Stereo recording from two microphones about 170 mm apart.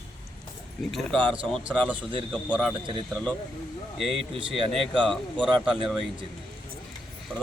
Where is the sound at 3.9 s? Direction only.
Centre (ahead or behind).